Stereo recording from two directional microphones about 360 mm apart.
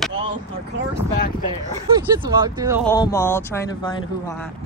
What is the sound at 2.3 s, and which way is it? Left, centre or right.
Speech, centre.